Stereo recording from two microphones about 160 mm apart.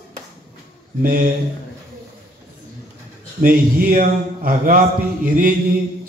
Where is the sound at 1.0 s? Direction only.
60° right (ahead or behind).